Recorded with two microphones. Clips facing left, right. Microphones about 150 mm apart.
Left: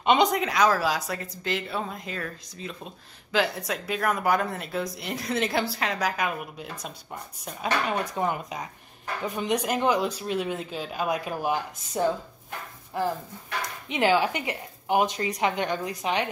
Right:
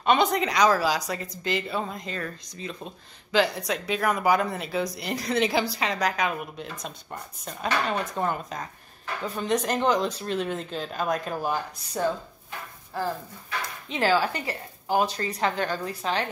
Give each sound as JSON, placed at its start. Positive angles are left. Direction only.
{"t": 0.0, "sound": "speech", "side_deg": 20}
{"t": 0.3, "sound": "speech", "side_deg": 0}